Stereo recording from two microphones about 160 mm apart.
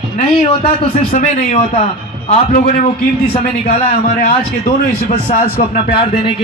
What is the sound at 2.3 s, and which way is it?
A man's voice, 55° left (ahead or behind).